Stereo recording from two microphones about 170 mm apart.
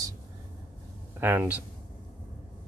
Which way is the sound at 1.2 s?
10° right (ahead or behind).